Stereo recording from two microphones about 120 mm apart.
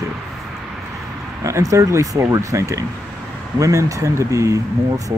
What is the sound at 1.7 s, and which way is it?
Speech, 30° right (ahead or behind).